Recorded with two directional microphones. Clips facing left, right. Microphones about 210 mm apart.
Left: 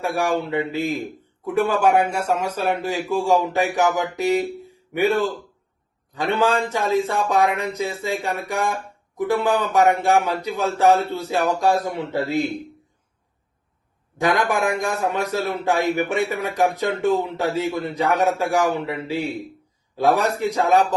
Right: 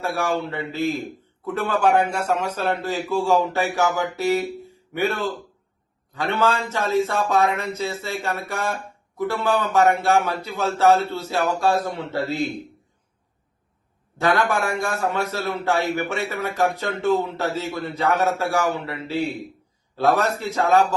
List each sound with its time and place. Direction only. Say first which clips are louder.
0.0 s speech: left 2 dB; 15° left (ahead or behind)
4.6 s a sound: left 3 dB; 15° left (ahead or behind)
6.1 s speech: left 2 dB; 15° left (ahead or behind)
14.2 s speech: left 1 dB; 15° left (ahead or behind)